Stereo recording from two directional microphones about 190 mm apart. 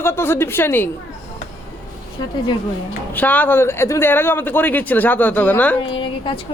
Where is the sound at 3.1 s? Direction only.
10° left (ahead or behind).